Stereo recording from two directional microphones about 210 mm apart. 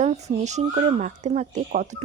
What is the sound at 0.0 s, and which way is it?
A woman's voice, 30° right (ahead or behind).